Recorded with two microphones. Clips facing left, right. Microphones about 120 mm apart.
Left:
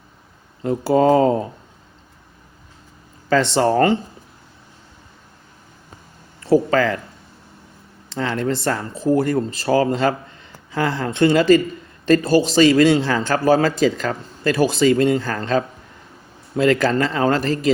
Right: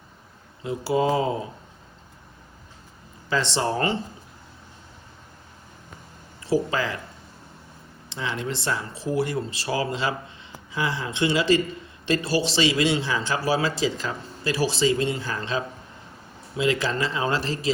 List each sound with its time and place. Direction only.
0.6 s a man's voice: 50° left (ahead or behind)
3.2 s speech: 55° left (ahead or behind)
6.5 s speech: 60° left (ahead or behind)
8.1 s a man's voice: 50° left (ahead or behind)